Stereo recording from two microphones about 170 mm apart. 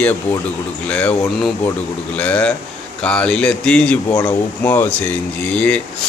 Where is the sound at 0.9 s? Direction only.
10° left (ahead or behind).